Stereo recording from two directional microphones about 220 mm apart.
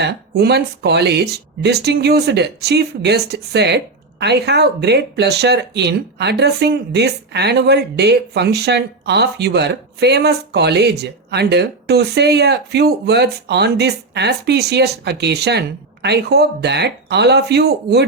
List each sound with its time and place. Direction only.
0.0 s speech: 50° right (ahead or behind)